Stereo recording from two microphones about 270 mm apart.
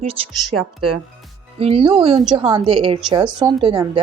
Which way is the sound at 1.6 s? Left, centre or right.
Centre.